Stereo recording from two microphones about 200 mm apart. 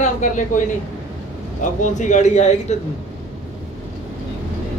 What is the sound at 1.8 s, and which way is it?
Speech, 40° left (ahead or behind).